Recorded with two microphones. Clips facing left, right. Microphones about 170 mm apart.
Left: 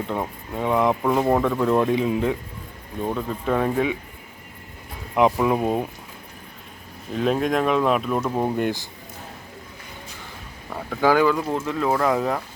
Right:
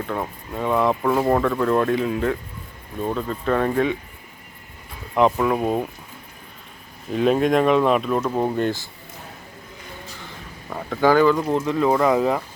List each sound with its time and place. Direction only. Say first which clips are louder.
0.0 s speech: even; 15° left (ahead or behind)
1.1 s speech: right 1 dB; centre (ahead or behind)
1.4 s speech: even; 15° left (ahead or behind)
5.1 s speech: even; 10° left (ahead or behind)
7.1 s speech: right 4 dB; centre (ahead or behind)
8.5 s speech: right 1 dB; 15° left (ahead or behind)
10.8 s speech: right 2 dB; centre (ahead or behind)